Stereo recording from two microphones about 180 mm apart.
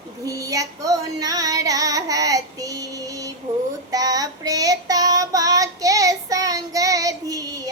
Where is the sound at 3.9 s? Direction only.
20° right (ahead or behind).